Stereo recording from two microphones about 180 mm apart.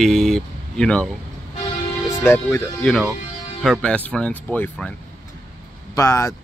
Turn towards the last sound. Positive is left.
turn(degrees=15)  # may be behind; listen again after turning